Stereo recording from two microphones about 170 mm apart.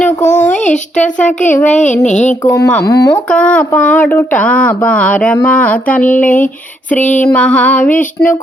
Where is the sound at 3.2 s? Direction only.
5° left (ahead or behind).